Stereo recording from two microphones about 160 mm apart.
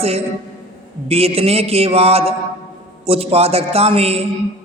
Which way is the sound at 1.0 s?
40° right (ahead or behind).